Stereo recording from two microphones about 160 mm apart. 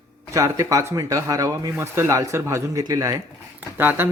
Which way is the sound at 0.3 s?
20° right (ahead or behind).